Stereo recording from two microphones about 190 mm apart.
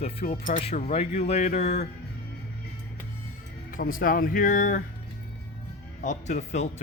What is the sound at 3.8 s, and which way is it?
Speech, 45° left (ahead or behind).